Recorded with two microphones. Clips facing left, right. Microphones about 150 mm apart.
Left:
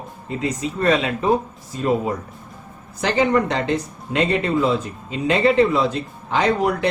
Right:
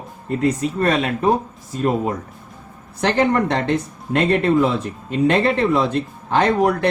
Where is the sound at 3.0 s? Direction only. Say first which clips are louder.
Right 1 dB; 60° right (ahead or behind).